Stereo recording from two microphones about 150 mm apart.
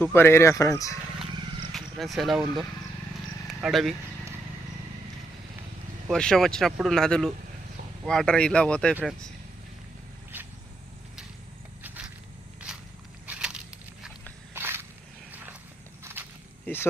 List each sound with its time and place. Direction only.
0.0 s speech: 15° left (ahead or behind)
1.7 s speech: centre (ahead or behind)
6.1 s speech: 5° left (ahead or behind)
10.3 s vehicle: 15° right (ahead or behind)
13.2 s crackle: 5° right (ahead or behind)
14.5 s a sound: 15° right (ahead or behind)